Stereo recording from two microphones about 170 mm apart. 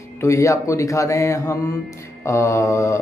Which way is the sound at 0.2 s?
20° left (ahead or behind).